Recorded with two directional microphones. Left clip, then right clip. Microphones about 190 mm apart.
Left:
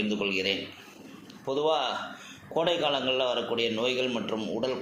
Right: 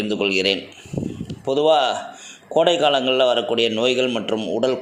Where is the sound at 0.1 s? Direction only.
50° right (ahead or behind).